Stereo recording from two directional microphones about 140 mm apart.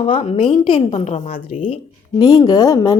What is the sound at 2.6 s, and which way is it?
Speech, 25° left (ahead or behind).